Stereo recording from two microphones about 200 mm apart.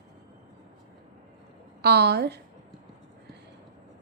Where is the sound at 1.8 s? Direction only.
55° right (ahead or behind).